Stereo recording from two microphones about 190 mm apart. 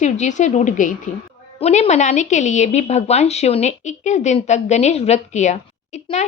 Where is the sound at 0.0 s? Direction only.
40° left (ahead or behind).